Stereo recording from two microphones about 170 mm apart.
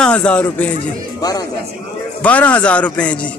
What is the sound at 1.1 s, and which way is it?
Speech, 20° left (ahead or behind).